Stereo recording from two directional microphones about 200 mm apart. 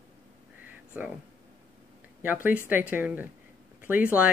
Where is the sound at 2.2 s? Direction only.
10° right (ahead or behind).